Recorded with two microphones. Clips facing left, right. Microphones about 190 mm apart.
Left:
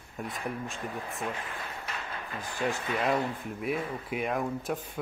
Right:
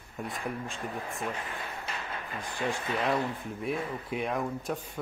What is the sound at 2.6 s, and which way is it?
Speech, 5° left (ahead or behind).